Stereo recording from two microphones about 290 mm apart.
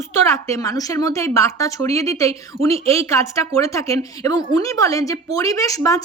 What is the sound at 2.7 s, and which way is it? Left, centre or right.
Speech, centre.